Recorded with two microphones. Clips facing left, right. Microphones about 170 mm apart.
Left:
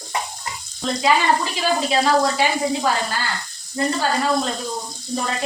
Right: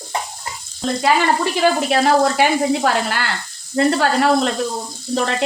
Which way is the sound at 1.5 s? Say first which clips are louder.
Right 4 dB; 60° right (ahead or behind).